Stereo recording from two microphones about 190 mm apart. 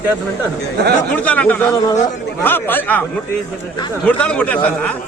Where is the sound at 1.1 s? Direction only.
5° left (ahead or behind).